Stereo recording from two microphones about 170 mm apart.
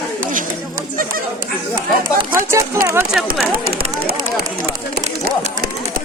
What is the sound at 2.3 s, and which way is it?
Speech, 20° right (ahead or behind).